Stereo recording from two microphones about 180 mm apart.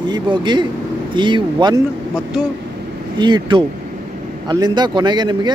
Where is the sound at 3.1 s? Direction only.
25° right (ahead or behind).